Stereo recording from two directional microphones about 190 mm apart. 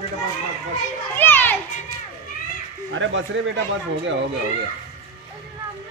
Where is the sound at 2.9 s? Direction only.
80° right.